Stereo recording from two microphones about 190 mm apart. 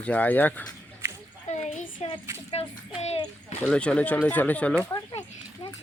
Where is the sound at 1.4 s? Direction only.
40° left (ahead or behind).